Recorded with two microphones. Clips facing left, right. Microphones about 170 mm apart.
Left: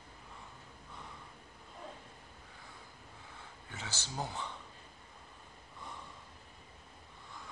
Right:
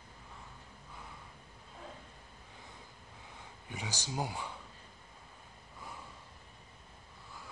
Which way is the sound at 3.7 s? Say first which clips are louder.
Right 4 dB; 15° right (ahead or behind).